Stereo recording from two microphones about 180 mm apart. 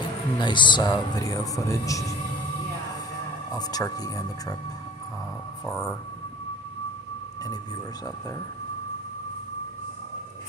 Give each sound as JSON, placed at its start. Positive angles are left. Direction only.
{"t": 0.4, "sound": "speech", "side_deg": 25}
{"t": 3.5, "sound": "speech", "side_deg": 20}